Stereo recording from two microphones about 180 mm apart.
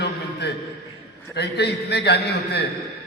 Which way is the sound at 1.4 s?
65° left (ahead or behind).